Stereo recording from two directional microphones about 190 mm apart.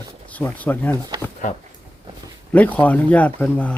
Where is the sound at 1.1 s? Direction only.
25° right (ahead or behind).